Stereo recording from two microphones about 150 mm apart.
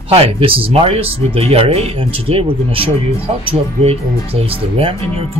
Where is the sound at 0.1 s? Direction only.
40° right (ahead or behind).